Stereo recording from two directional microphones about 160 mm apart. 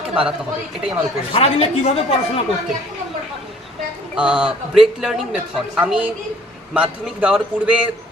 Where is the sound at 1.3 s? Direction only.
40° left (ahead or behind).